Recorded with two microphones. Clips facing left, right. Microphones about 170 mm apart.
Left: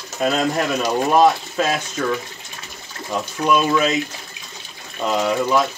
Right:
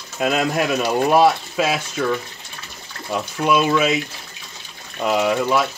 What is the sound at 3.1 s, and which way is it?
Speech, 10° right (ahead or behind).